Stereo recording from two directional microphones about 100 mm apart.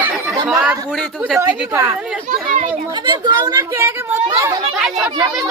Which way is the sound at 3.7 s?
25° right (ahead or behind).